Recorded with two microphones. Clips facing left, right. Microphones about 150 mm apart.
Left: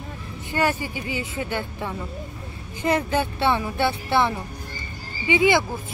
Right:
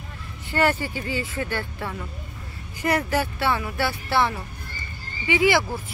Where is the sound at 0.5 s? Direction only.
15° left (ahead or behind).